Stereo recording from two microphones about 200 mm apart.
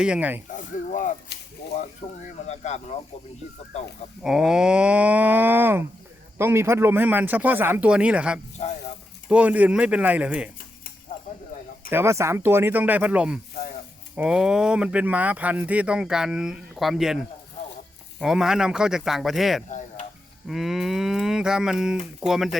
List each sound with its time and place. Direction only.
0.0 s speech: 5° right (ahead or behind)
0.5 s a sound: 40° left (ahead or behind)
2.5 s speech: 35° left (ahead or behind)
4.2 s speech: 5° right (ahead or behind)
11.1 s a sound: 40° left (ahead or behind)
11.9 s speech: 10° right (ahead or behind)